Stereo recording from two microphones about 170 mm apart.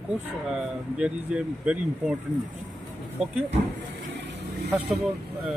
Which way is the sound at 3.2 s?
5° right (ahead or behind).